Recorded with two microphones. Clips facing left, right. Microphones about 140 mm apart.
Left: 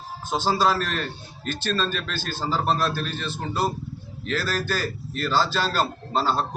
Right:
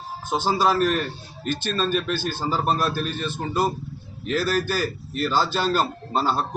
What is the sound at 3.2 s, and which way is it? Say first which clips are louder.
Speech: right 3 dB; 50° right (ahead or behind).